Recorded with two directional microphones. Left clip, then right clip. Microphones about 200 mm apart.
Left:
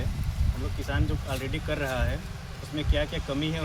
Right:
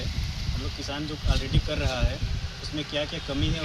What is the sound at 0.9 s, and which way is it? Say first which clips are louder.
Speech: even; centre (ahead or behind).